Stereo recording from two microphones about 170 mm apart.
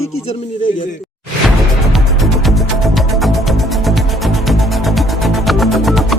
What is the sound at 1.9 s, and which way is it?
Music, centre (ahead or behind).